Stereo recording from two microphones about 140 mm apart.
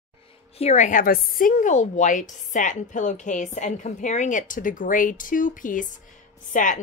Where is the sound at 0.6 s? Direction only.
55° left (ahead or behind).